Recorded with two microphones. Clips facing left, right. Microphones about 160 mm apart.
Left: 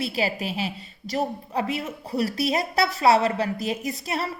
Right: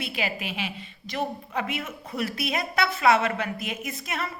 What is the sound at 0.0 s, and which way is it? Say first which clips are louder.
A woman's voice: left 5 dB; 35° left (ahead or behind).